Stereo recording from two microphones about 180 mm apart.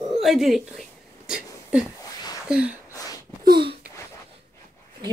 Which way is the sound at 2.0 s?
20° left (ahead or behind).